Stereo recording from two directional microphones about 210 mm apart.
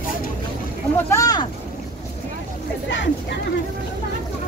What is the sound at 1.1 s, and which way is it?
Speech, 15° left (ahead or behind).